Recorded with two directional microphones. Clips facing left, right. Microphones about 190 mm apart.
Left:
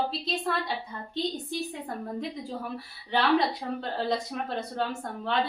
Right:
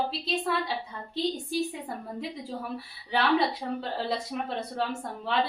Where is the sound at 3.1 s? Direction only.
5° right (ahead or behind).